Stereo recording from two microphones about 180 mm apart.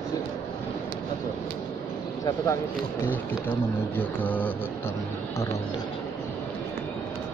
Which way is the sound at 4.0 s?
10° left (ahead or behind).